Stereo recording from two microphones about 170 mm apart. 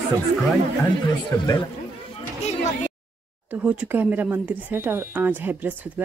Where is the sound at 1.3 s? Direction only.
15° left (ahead or behind).